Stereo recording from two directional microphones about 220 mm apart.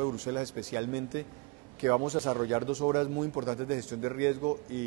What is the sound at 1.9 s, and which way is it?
Speech, 25° right (ahead or behind).